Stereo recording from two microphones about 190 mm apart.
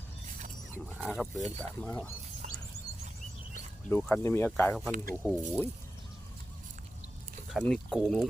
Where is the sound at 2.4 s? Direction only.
45° right (ahead or behind).